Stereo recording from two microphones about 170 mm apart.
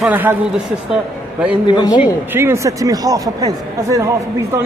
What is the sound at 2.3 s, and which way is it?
A man's voice, 15° right (ahead or behind).